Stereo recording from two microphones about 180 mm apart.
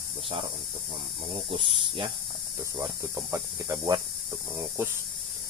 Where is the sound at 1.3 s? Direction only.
30° right (ahead or behind).